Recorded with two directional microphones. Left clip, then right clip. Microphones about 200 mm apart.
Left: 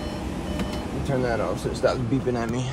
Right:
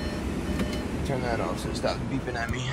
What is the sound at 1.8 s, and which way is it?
Speech, 55° left (ahead or behind).